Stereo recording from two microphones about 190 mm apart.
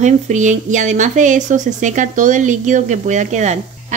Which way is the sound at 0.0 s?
40° right (ahead or behind).